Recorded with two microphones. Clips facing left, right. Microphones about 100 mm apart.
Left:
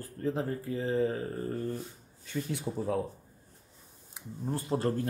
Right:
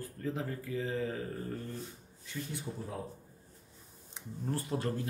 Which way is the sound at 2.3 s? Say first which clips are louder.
Left 6 dB; 85° left.